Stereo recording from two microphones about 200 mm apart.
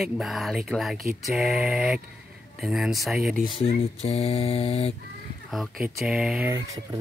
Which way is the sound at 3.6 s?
30° left (ahead or behind).